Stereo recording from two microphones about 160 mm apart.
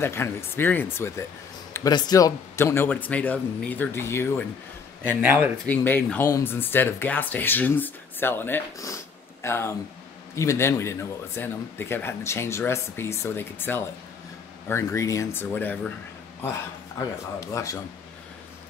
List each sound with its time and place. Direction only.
0.0 s speech: 15° left (ahead or behind)
5.2 s speech: 10° right (ahead or behind)
5.7 s speech: 10° left (ahead or behind)
17.4 s speech: 20° left (ahead or behind)